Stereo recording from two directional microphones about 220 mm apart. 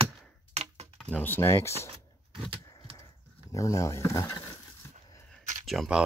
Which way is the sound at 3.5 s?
15° left (ahead or behind).